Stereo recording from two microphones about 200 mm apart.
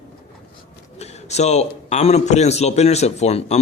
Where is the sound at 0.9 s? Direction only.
35° left (ahead or behind).